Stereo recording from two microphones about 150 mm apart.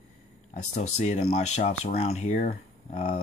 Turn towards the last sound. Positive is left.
turn(degrees=55)  # may be behind; listen again after turning